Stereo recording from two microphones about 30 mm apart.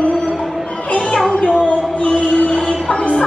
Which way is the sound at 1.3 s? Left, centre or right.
Left.